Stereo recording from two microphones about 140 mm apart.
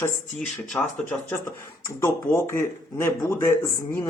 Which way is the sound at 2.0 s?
20° left (ahead or behind).